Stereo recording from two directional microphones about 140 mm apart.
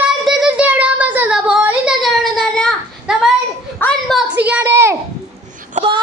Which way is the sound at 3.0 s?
5° right (ahead or behind).